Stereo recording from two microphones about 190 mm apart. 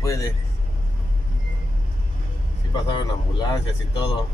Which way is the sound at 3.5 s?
25° left (ahead or behind).